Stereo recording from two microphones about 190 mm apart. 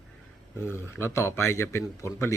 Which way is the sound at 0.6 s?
15° left (ahead or behind).